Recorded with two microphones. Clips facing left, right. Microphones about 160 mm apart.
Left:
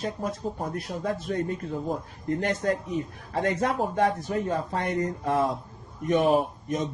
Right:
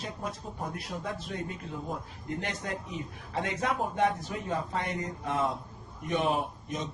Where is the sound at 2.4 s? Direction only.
45° left (ahead or behind).